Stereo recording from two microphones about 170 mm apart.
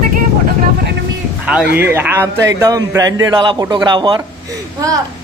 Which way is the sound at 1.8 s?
15° right (ahead or behind).